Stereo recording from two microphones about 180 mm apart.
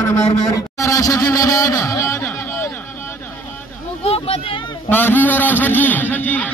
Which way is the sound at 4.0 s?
35° left (ahead or behind).